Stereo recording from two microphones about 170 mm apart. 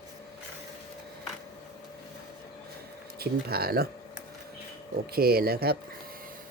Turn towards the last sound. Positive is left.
turn(degrees=-65)  # may be behind; listen again after turning